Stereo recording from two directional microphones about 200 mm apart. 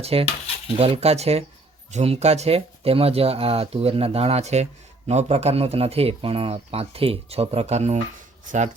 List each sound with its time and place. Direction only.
0.0 s speech: 30° right (ahead or behind)